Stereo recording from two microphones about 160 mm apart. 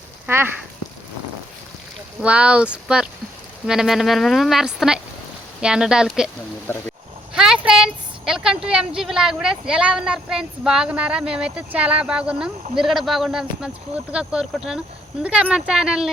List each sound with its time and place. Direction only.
0.3 s speech: 15° right (ahead or behind)
2.2 s a woman's voice: 5° right (ahead or behind)
6.7 s speech: 15° left (ahead or behind)
7.3 s a woman's voice: 5° right (ahead or behind)